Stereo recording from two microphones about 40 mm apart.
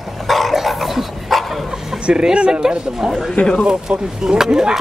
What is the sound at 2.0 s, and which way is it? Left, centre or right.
Speech, centre.